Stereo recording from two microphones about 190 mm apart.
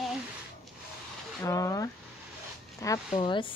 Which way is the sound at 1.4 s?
15° left (ahead or behind).